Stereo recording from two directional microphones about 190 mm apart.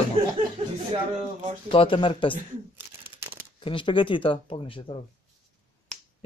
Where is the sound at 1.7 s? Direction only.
25° left (ahead or behind).